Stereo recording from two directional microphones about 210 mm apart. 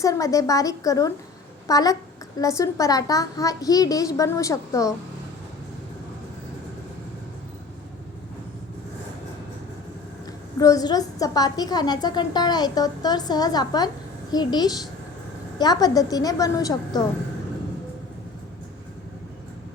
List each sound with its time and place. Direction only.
0.0 s a child's voice: 15° left (ahead or behind)
10.6 s a woman's voice: 15° left (ahead or behind)